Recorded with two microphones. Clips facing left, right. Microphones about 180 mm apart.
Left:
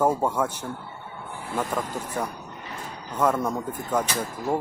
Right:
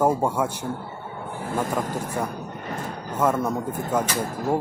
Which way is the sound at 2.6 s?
50° right (ahead or behind).